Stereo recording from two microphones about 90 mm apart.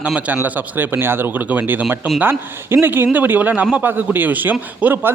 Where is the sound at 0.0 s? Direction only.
10° right (ahead or behind).